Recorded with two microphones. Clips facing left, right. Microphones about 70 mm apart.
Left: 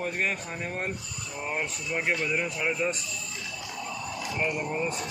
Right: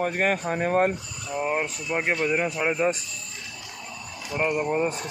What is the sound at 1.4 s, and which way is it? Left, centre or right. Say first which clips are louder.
Speech: right 4 dB; centre.